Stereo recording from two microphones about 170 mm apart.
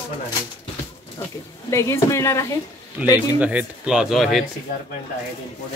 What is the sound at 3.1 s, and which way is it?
Speech, 10° right (ahead or behind).